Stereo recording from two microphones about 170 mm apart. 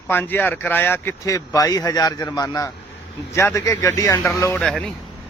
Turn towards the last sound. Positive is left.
turn(degrees=5)  # may be behind; listen again after turning